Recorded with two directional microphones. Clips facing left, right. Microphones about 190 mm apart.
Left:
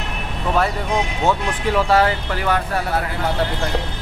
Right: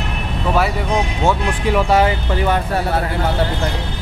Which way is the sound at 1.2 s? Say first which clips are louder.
Right 2 dB; 15° right (ahead or behind).